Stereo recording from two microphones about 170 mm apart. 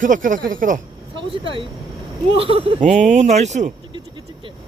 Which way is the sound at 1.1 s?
30° right (ahead or behind).